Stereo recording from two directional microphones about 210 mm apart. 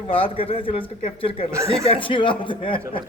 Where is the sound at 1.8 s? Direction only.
25° left (ahead or behind).